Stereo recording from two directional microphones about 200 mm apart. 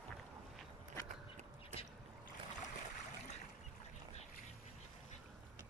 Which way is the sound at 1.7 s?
35° right (ahead or behind).